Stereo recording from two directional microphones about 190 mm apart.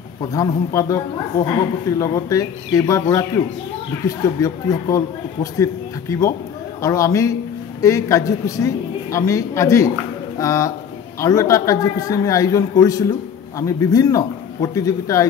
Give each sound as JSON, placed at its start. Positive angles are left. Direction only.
{"t": 0.3, "sound": "a woman's voice", "side_deg": 20}